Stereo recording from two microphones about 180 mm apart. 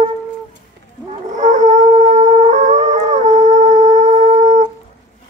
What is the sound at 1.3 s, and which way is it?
Music, 45° right (ahead or behind).